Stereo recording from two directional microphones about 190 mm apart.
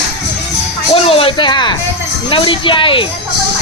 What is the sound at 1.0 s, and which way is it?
A man's voice, 30° left (ahead or behind).